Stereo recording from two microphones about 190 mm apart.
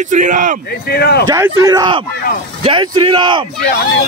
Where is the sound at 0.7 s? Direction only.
55° left (ahead or behind).